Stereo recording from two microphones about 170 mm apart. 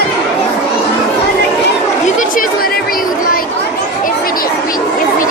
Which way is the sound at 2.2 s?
60° left (ahead or behind).